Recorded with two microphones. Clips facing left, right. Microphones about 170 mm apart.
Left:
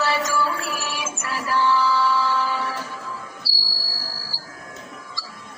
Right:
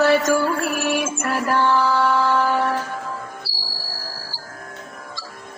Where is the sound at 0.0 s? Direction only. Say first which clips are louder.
Right 6 dB; 50° right (ahead or behind).